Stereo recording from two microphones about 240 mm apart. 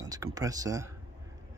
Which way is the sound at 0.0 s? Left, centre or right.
Centre.